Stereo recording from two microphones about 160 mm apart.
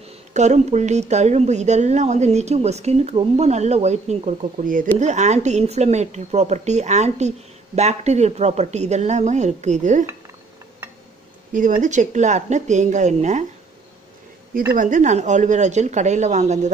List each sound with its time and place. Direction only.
0.0 s speech: 45° right (ahead or behind)
11.8 s speech: 50° right (ahead or behind)
14.8 s speech: 50° right (ahead or behind)